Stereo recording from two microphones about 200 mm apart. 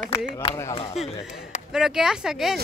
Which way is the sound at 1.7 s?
5° right (ahead or behind).